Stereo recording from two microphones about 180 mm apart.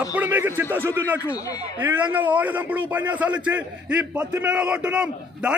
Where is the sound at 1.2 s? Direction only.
20° left (ahead or behind).